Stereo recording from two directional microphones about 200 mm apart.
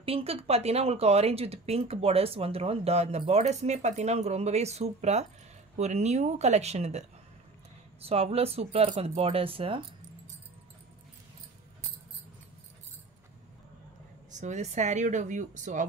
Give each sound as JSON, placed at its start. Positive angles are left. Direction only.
{"t": 0.0, "sound": "speech", "side_deg": -30}
{"t": 14.3, "sound": "speech", "side_deg": -35}